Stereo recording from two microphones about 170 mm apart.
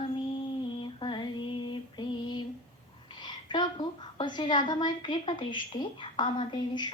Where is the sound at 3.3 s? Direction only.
25° left (ahead or behind).